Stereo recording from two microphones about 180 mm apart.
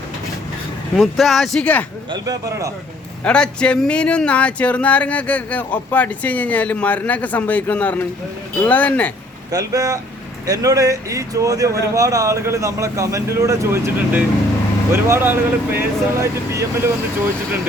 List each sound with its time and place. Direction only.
0.9 s speech: centre (ahead or behind)
2.0 s speech: 20° right (ahead or behind)
3.2 s speech: 5° left (ahead or behind)
9.5 s speech: 20° right (ahead or behind)